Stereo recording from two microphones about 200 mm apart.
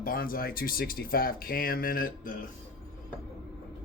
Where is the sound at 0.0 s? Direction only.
45° left (ahead or behind).